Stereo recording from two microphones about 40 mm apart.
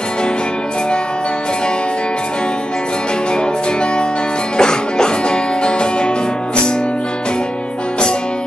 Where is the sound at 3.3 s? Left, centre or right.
Left.